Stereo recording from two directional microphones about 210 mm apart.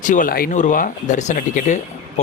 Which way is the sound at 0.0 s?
40° left (ahead or behind).